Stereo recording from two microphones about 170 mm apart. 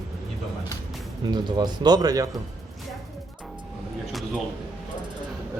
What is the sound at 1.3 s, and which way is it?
Speech, 25° right (ahead or behind).